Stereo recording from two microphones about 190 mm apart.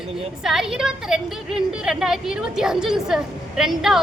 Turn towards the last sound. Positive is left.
turn(degrees=0)  # may be behind; listen again after turning